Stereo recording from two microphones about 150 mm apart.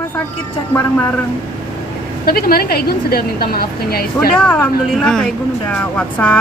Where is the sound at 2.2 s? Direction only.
85° left.